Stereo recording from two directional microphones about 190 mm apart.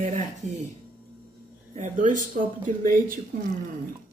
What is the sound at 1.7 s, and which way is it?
Speech, 40° right (ahead or behind).